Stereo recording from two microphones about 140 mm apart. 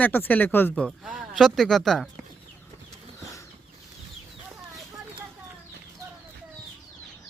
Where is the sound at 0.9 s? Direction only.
Centre (ahead or behind).